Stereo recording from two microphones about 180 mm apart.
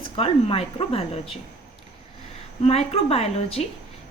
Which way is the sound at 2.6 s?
35° left (ahead or behind).